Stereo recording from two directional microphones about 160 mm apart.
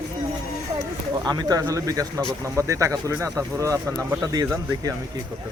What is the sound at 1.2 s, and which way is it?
Speech, 25° right (ahead or behind).